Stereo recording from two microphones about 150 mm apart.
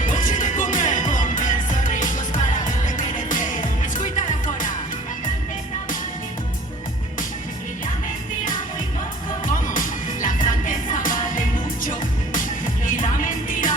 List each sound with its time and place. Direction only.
0.0 s music: 60° left (ahead or behind)
9.5 s music: 60° left (ahead or behind)